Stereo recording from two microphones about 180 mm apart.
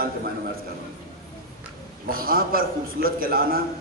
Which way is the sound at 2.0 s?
55° right (ahead or behind).